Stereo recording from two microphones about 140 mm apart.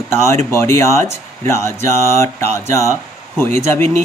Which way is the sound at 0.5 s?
20° left (ahead or behind).